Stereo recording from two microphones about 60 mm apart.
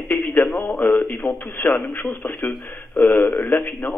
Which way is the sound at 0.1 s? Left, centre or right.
Left.